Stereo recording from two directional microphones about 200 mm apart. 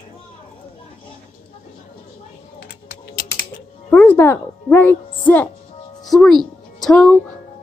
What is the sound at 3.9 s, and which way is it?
A woman's voice, 10° left (ahead or behind).